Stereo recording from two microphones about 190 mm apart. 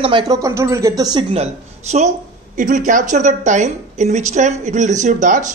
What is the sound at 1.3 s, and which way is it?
A woman's voice, 35° right (ahead or behind).